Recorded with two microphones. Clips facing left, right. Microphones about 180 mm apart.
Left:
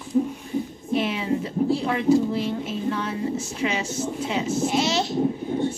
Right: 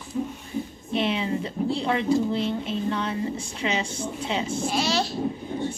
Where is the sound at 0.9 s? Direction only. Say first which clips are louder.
Left 1 dB; 25° right (ahead or behind).